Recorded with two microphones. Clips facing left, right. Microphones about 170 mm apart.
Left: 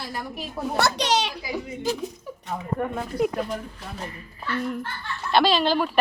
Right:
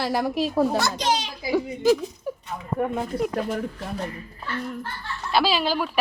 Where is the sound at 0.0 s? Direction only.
80° right.